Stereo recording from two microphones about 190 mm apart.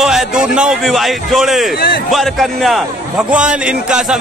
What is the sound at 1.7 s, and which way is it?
Speech, 55° left (ahead or behind).